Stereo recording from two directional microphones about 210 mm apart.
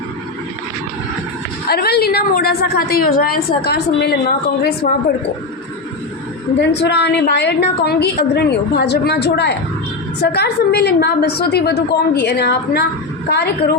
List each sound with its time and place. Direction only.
1.6 s a woman's voice: 50° left (ahead or behind)
6.6 s a woman's voice: 55° left (ahead or behind)